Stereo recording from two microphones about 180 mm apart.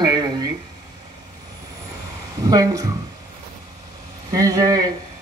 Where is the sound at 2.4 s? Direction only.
20° right (ahead or behind).